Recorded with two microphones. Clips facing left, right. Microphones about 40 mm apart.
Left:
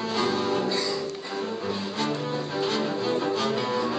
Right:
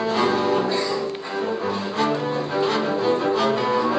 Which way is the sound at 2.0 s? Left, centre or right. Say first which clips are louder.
Right 7 dB; centre.